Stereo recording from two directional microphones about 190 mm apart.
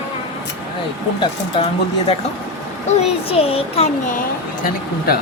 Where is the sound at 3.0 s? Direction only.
30° left (ahead or behind).